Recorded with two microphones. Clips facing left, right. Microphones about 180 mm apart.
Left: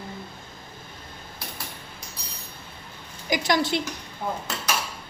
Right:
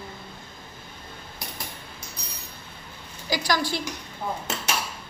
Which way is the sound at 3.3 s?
25° left (ahead or behind).